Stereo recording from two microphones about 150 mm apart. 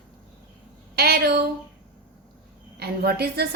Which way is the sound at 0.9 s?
90° right.